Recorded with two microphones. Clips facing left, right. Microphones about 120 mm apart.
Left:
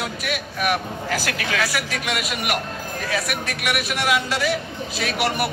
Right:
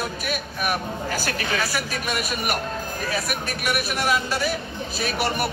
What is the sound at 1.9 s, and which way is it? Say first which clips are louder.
Speech: left 1 dB; 75° left (ahead or behind).